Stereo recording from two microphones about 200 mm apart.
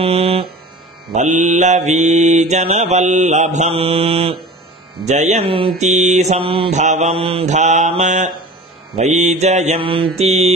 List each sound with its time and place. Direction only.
0.0 s hum: 30° right (ahead or behind)
1.1 s mantra: 40° right (ahead or behind)